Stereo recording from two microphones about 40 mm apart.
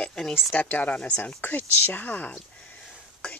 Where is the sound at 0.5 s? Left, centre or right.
Left.